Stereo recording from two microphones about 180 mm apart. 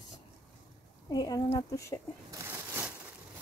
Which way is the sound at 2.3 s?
10° right (ahead or behind).